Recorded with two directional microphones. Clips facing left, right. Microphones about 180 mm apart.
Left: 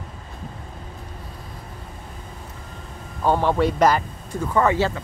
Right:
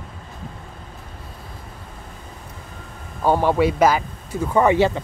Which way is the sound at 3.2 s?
10° right (ahead or behind).